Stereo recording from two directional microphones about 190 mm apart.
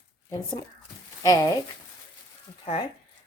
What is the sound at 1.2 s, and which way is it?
Speech, 20° left (ahead or behind).